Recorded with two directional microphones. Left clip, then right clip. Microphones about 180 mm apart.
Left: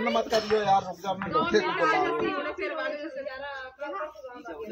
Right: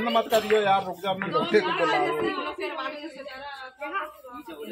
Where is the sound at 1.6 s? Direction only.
35° right (ahead or behind).